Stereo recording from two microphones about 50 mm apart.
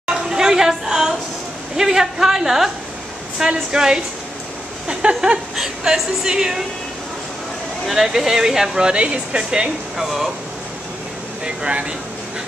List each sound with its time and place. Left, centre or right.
0.0 s chatter: centre
1.8 s speech: centre
4.8 s a sound: right
5.6 s speech: centre
7.8 s speech: centre
9.9 s speech: centre
11.4 s speech: centre